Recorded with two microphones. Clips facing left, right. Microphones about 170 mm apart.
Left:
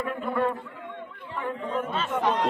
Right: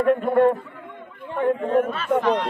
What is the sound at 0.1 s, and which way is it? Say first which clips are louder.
A man's voice: right 11 dB; 55° right (ahead or behind).